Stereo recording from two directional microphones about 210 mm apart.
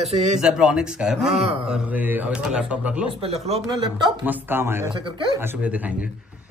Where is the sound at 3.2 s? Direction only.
30° right (ahead or behind).